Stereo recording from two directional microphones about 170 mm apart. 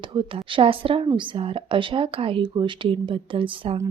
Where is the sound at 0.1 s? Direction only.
30° right (ahead or behind).